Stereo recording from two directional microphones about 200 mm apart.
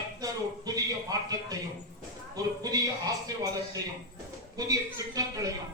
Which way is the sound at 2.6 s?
15° right (ahead or behind).